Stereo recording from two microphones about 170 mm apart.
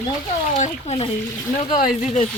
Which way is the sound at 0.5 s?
40° left (ahead or behind).